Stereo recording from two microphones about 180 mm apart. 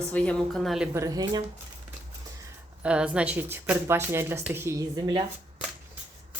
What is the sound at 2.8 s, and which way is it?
Speech, 5° right (ahead or behind).